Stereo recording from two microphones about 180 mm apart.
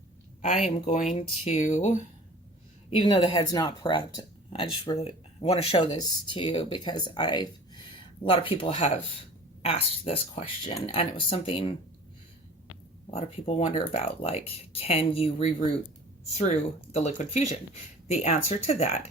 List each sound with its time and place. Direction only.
0.6 s speech: 40° left (ahead or behind)
2.9 s speech: 30° left (ahead or behind)
13.1 s speech: 35° left (ahead or behind)